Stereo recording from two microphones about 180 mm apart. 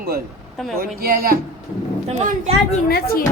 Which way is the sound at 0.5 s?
Centre (ahead or behind).